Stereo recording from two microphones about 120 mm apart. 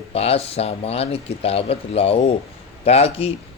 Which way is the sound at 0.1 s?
55° left (ahead or behind).